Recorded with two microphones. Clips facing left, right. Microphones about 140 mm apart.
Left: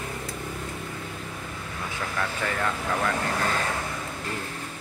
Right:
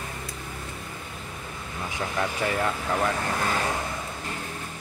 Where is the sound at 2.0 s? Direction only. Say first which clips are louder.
Right 3 dB; 20° right (ahead or behind).